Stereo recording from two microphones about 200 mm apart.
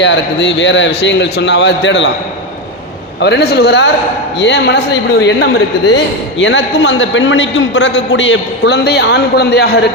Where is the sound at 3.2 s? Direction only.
55° left (ahead or behind).